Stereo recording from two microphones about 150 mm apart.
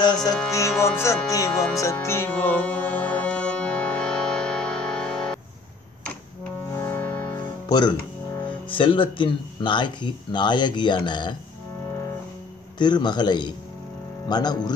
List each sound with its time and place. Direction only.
0.5 s music: 20° left (ahead or behind)
6.7 s music: 15° left (ahead or behind)
7.6 s speech: 30° left (ahead or behind)
12.7 s music: 30° left (ahead or behind)